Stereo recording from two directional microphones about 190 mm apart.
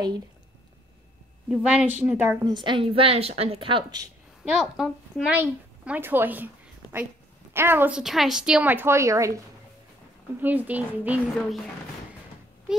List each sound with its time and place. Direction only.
1.5 s a child's voice: 5° right (ahead or behind)
2.5 s a woman's voice: 25° right (ahead or behind)
4.5 s a child's voice: centre (ahead or behind)
10.4 s a woman's voice: 10° right (ahead or behind)